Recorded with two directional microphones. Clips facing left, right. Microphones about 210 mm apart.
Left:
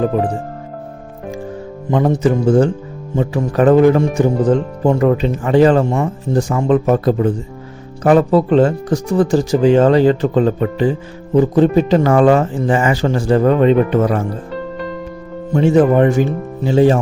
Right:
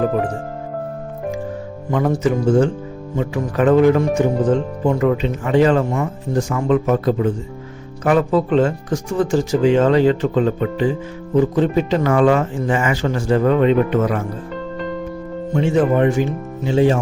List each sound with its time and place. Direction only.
1.9 s speech: 30° left (ahead or behind)
15.5 s speech: 40° left (ahead or behind)